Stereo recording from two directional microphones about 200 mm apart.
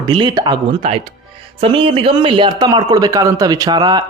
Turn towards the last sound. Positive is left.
turn(degrees=-20)  # may be behind; listen again after turning